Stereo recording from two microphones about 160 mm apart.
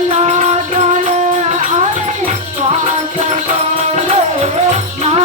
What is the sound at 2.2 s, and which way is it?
Music, 45° right (ahead or behind).